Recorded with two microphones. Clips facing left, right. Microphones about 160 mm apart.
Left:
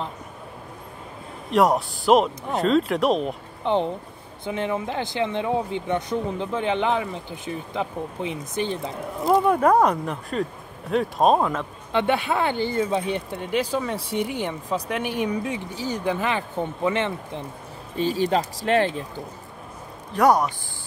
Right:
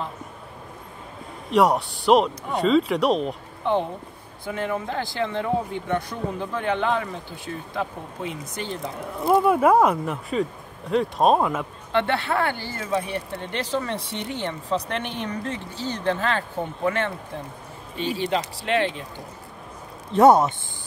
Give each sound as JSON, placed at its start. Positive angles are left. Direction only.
{"t": 1.5, "sound": "speech", "side_deg": 0}
{"t": 4.5, "sound": "speech", "side_deg": 20}
{"t": 9.2, "sound": "speech", "side_deg": 0}
{"t": 11.9, "sound": "speech", "side_deg": 15}
{"t": 17.9, "sound": "speech", "side_deg": 40}
{"t": 20.1, "sound": "speech", "side_deg": -25}